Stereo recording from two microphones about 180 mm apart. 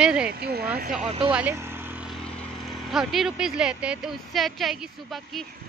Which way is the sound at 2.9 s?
Centre (ahead or behind).